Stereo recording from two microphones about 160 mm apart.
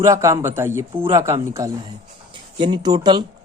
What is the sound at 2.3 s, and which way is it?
Speech, 30° right (ahead or behind).